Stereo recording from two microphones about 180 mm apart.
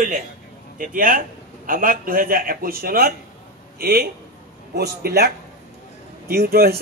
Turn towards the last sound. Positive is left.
turn(degrees=-60)  # may be behind; listen again after turning